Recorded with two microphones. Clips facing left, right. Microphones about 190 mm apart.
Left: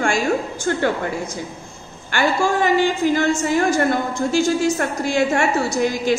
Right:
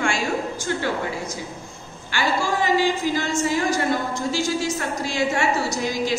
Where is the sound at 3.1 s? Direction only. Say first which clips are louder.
Left 4 dB; 55° left (ahead or behind).